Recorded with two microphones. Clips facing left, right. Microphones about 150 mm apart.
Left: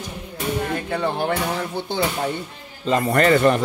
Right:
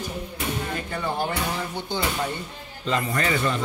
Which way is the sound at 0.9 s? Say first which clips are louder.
Left 4 dB; 65° left (ahead or behind).